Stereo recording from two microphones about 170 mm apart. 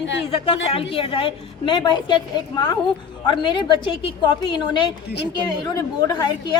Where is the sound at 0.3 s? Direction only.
35° left (ahead or behind).